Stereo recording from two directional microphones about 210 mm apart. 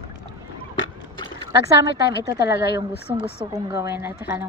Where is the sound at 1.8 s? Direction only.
55° left (ahead or behind).